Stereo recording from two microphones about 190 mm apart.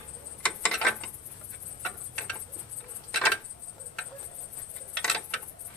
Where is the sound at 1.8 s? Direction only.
5° left (ahead or behind).